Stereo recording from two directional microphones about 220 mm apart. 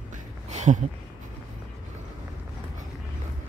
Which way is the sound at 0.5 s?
35° right (ahead or behind).